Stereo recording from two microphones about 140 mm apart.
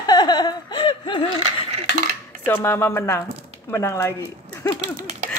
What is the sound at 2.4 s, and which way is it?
Speech, 15° left (ahead or behind).